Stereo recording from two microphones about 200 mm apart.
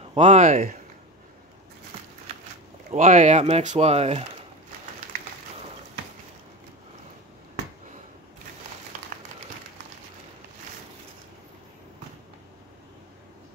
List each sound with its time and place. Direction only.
0.1 s speech: 35° right (ahead or behind)
2.9 s speech: 35° right (ahead or behind)
9.1 s a sound: 45° right (ahead or behind)